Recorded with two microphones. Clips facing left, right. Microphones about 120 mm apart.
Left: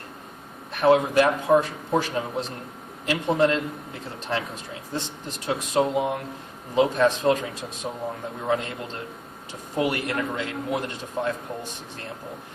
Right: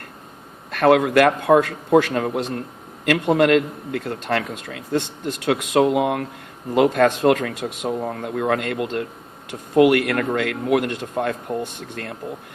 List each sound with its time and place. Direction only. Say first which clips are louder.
0.7 s a man's voice: right 4 dB; 75° right (ahead or behind)